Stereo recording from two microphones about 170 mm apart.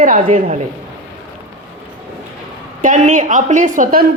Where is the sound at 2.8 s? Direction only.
50° right (ahead or behind).